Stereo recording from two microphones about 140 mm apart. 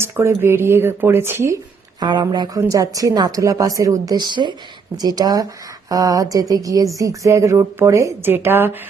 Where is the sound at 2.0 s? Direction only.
30° right (ahead or behind).